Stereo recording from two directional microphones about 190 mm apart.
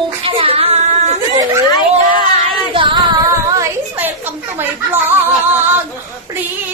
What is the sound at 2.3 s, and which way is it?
Child singing, 30° right (ahead or behind).